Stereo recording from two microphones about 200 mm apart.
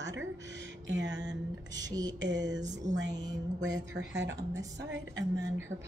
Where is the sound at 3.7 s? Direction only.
65° right (ahead or behind).